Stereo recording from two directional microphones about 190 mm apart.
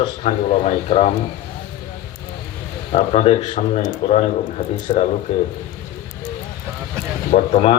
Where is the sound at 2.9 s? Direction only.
30° left (ahead or behind).